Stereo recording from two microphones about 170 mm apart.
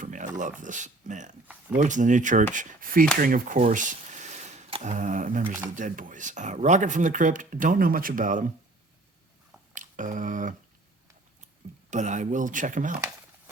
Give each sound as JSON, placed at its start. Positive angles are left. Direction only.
{"t": 0.0, "sound": "speech", "side_deg": -50}
{"t": 9.7, "sound": "speech", "side_deg": -50}
{"t": 11.9, "sound": "speech", "side_deg": -45}